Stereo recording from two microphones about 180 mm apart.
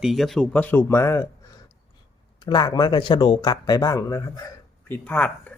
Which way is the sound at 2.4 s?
25° left (ahead or behind).